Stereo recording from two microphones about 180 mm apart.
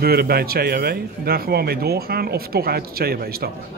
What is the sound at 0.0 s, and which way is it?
A man's voice, 60° right (ahead or behind).